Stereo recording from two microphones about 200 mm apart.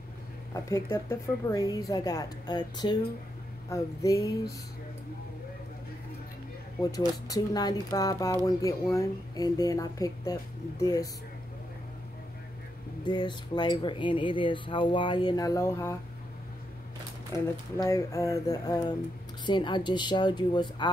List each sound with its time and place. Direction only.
0.5 s a woman's voice: 15° left (ahead or behind)
7.2 s a woman's voice: 20° left (ahead or behind)
13.0 s speech: 20° left (ahead or behind)
17.3 s a woman's voice: 15° left (ahead or behind)